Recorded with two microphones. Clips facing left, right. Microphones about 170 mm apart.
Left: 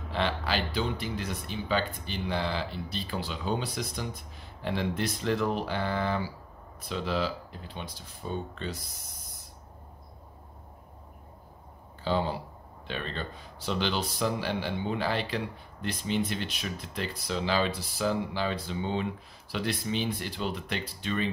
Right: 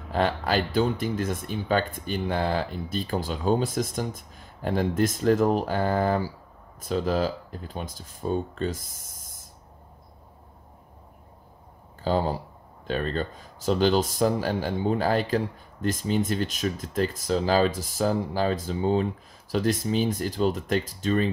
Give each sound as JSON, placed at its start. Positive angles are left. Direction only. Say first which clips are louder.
{"t": 0.1, "sound": "speech", "louder": "right 6 dB", "side_deg": -45}
{"t": 12.0, "sound": "speech", "louder": "right 4 dB", "side_deg": -40}